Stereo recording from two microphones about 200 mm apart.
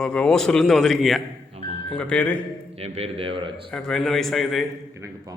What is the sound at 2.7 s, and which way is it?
Speech, 30° right (ahead or behind).